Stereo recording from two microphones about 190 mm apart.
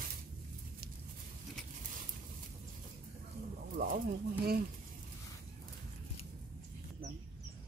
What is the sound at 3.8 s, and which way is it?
Pigeon, 55° right (ahead or behind).